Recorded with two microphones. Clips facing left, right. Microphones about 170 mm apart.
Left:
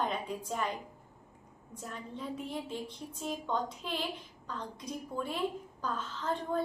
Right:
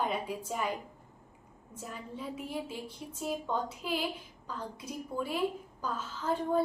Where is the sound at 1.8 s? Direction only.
5° right (ahead or behind).